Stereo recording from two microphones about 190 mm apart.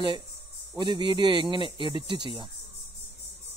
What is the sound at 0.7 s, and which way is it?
Speech, 25° right (ahead or behind).